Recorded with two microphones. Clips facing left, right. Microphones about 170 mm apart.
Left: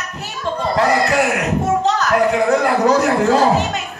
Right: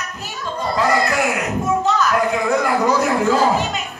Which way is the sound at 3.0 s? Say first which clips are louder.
Left 2 dB; 70° left (ahead or behind).